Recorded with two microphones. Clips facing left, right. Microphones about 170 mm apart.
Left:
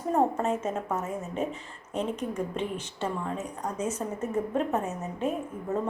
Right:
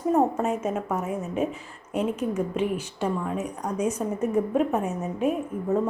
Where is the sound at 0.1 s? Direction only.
5° right (ahead or behind).